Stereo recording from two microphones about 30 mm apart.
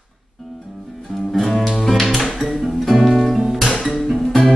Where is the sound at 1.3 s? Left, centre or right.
Centre.